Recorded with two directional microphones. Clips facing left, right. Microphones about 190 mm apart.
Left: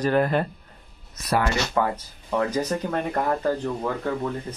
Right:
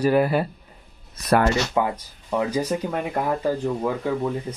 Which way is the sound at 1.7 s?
15° right (ahead or behind).